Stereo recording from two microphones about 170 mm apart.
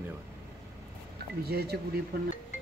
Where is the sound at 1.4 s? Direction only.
70° right (ahead or behind).